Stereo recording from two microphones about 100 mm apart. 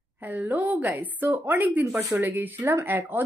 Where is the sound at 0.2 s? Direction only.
15° right (ahead or behind).